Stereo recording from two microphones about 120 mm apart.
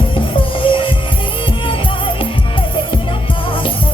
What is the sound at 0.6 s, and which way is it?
Music, 45° left (ahead or behind).